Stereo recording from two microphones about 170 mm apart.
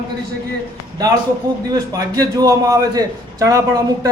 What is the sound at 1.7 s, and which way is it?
A man's voice, 20° right (ahead or behind).